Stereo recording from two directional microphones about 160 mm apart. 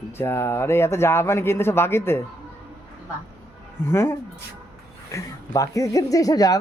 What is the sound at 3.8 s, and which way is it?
A woman's voice, 15° left (ahead or behind).